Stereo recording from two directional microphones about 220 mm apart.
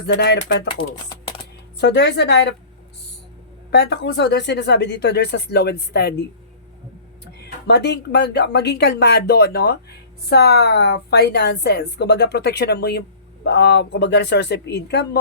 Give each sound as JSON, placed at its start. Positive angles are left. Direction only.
{"t": 0.1, "sound": "a woman's voice", "side_deg": 50}
{"t": 1.8, "sound": "a woman's voice", "side_deg": 50}
{"t": 3.7, "sound": "a woman's voice", "side_deg": 50}
{"t": 7.4, "sound": "a woman's voice", "side_deg": 50}